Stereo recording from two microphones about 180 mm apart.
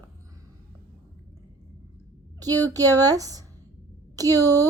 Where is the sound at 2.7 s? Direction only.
20° right (ahead or behind).